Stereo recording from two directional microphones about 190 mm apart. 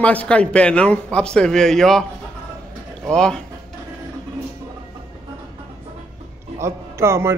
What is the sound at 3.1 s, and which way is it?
Speech, 5° left (ahead or behind).